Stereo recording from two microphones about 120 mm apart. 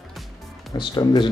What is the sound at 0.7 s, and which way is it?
Speech, 40° left (ahead or behind).